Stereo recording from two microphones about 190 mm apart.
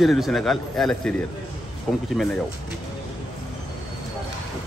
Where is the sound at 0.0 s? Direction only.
Centre (ahead or behind).